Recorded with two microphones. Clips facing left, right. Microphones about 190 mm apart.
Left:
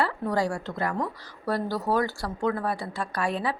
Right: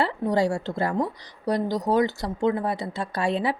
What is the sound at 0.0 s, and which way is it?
Speech, 25° right (ahead or behind).